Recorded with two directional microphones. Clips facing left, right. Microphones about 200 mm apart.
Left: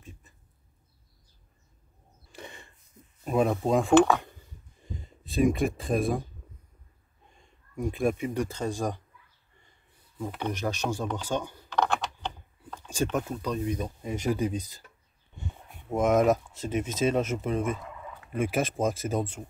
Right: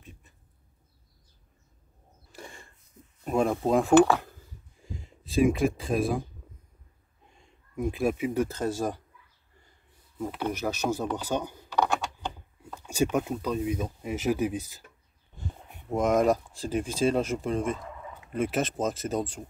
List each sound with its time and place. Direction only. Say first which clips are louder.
3.3 s speech: even; centre (ahead or behind)
7.7 s speech: even; 5° right (ahead or behind)
10.1 s speech: right 2 dB; 5° right (ahead or behind)
15.9 s speech: left 1 dB; 5° left (ahead or behind)